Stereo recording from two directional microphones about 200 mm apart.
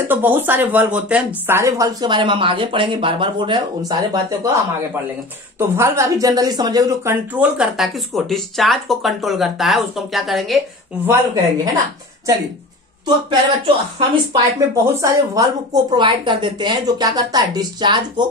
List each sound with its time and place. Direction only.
0.1 s speech: 10° right (ahead or behind)
5.6 s speech: 15° right (ahead or behind)
11.1 s speech: 20° right (ahead or behind)
13.7 s speech: 25° right (ahead or behind)
14.8 s speech: 15° right (ahead or behind)